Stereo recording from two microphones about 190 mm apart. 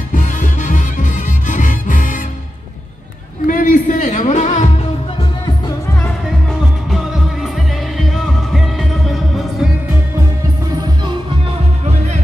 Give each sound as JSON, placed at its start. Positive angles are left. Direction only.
{"t": 0.1, "sound": "music", "side_deg": 40}
{"t": 3.4, "sound": "music", "side_deg": 45}
{"t": 6.9, "sound": "music", "side_deg": 0}